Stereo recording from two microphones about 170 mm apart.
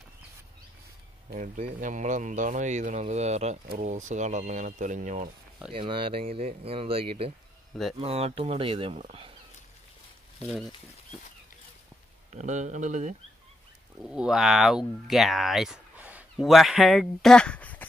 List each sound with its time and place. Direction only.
1.3 s speech: 50° right (ahead or behind)
5.7 s speech: 30° right (ahead or behind)
10.4 s speech: centre (ahead or behind)
12.3 s speech: 45° right (ahead or behind)
14.0 s speech: 5° right (ahead or behind)